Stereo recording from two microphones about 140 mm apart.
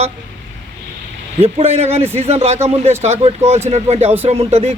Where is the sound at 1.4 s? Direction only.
50° right (ahead or behind).